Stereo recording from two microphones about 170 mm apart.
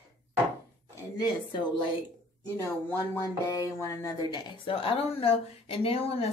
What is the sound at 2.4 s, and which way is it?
Speech, 15° left (ahead or behind).